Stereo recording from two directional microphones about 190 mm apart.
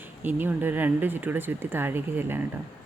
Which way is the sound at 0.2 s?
10° right (ahead or behind).